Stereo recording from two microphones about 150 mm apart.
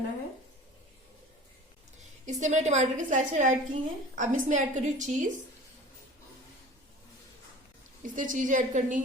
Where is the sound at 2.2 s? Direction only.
50° right (ahead or behind).